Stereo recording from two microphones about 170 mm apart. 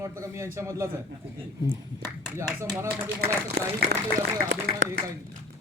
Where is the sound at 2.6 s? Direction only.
20° right (ahead or behind).